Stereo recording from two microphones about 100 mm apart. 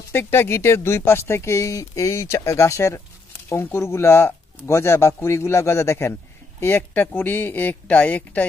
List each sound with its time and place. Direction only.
0.1 s speech: 25° left (ahead or behind)